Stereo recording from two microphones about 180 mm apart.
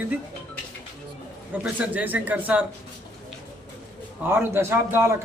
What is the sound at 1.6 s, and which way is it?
A man's voice, 10° right (ahead or behind).